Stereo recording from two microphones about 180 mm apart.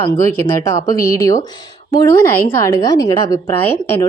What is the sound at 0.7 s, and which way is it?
A woman's voice, 20° left (ahead or behind).